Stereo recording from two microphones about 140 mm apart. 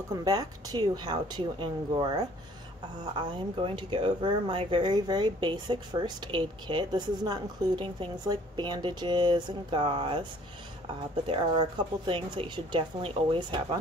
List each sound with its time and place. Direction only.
0.1 s speech: 25° right (ahead or behind)
11.2 s speech: 40° right (ahead or behind)